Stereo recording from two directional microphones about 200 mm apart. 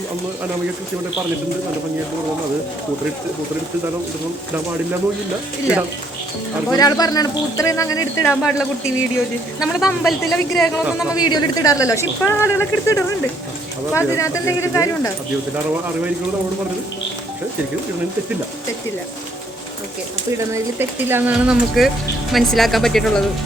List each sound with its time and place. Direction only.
6.7 s speech: 20° left (ahead or behind)
8.3 s speech: centre (ahead or behind)
11.1 s speech: 20° left (ahead or behind)
20.5 s speech: 10° right (ahead or behind)